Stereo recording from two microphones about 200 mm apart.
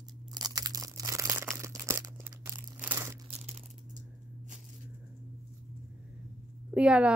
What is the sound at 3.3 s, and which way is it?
Crumpling, 35° right (ahead or behind).